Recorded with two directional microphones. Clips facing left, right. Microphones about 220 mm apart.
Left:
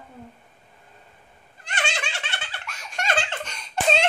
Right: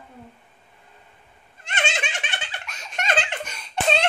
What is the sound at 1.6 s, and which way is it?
Giggle, 25° right (ahead or behind).